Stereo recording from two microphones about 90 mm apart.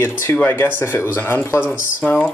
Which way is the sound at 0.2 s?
25° left (ahead or behind).